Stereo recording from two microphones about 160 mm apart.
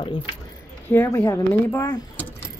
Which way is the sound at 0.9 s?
15° left (ahead or behind).